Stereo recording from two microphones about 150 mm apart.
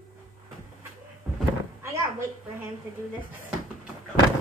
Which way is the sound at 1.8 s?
20° right (ahead or behind).